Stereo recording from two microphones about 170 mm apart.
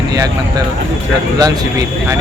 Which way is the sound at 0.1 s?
25° right (ahead or behind).